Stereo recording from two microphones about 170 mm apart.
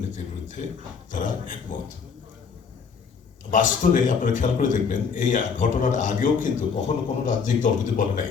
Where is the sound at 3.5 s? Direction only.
50° left (ahead or behind).